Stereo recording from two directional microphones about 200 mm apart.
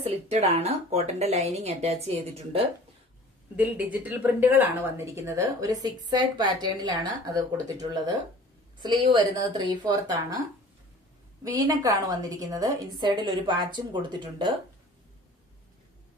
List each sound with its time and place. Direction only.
0.0 s speech: 30° right (ahead or behind)
3.5 s a woman's voice: 5° right (ahead or behind)
11.4 s a woman's voice: 15° right (ahead or behind)